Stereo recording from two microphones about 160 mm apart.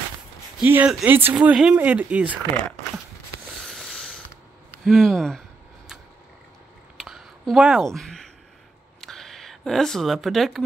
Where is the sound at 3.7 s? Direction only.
5° left (ahead or behind).